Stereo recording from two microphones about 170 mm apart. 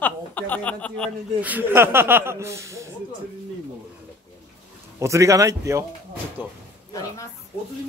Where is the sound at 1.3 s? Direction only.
10° right (ahead or behind).